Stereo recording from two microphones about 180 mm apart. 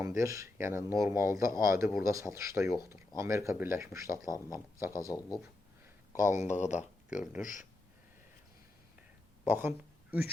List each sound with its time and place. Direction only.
0.0 s speech: 15° right (ahead or behind)
4.3 s speech: 20° left (ahead or behind)
4.5 s speech: 15° right (ahead or behind)
5.0 s speech: 20° left (ahead or behind)
6.1 s speech: 45° left (ahead or behind)
9.5 s speech: 10° right (ahead or behind)